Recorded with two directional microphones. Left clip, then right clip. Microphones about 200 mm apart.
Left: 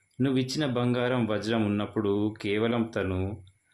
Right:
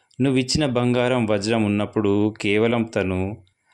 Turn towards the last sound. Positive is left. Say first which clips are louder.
# right 7 dB
turn(degrees=-30)  # may be behind; listen again after turning